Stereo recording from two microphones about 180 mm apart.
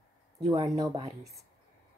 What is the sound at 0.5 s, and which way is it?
Speech, 20° right (ahead or behind).